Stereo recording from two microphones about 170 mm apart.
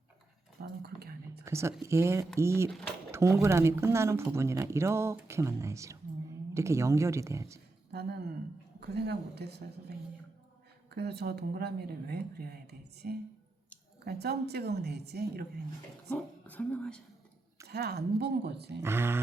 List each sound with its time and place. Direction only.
0.6 s whispering: 70° right (ahead or behind)
1.5 s a woman's voice: 15° right (ahead or behind)
2.6 s speech: 5° left (ahead or behind)
3.1 s a sound: 15° right (ahead or behind)
3.4 s a woman's voice: 15° right (ahead or behind)
7.9 s a woman's voice: 70° right (ahead or behind)
10.9 s a woman's voice: 75° right (ahead or behind)
16.0 s a woman's voice: 10° left (ahead or behind)
17.7 s a woman's voice: 70° right (ahead or behind)
18.8 s a woman's voice: 15° right (ahead or behind)